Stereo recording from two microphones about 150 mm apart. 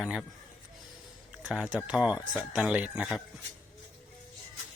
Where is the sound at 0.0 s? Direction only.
Centre (ahead or behind).